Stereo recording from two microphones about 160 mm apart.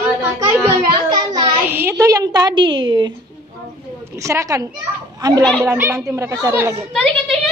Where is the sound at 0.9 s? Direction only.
30° right (ahead or behind).